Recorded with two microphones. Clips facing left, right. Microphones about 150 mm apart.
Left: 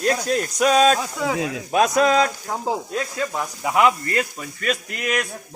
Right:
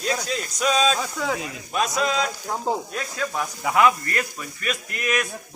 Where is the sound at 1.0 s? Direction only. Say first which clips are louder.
Left 2 dB; 5° left (ahead or behind).